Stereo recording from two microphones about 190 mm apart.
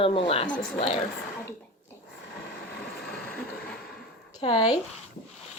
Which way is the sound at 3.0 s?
5° left (ahead or behind).